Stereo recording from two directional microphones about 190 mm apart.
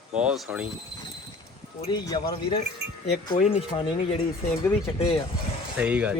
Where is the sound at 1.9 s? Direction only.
20° left (ahead or behind).